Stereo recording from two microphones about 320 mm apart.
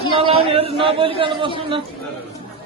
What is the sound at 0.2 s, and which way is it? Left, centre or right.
A man's voice, centre.